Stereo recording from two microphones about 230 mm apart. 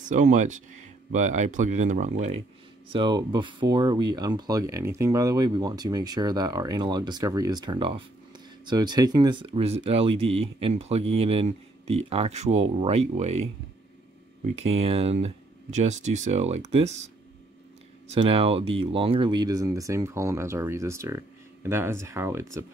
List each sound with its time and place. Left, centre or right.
0.0 s speech: right
2.9 s speech: centre